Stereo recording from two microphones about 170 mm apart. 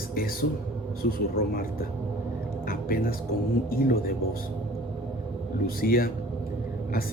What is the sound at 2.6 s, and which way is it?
A man's voice, 60° left (ahead or behind).